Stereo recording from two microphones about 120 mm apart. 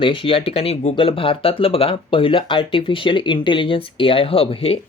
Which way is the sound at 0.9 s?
50° left (ahead or behind).